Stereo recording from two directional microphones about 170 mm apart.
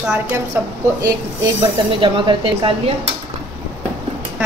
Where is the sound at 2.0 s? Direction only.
30° right (ahead or behind).